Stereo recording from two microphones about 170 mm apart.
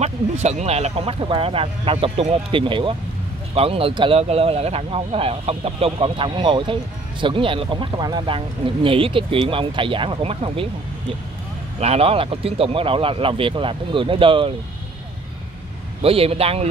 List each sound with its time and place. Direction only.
0.0 s speech: 40° right (ahead or behind)
11.8 s speech: 35° right (ahead or behind)
16.0 s speech: 35° right (ahead or behind)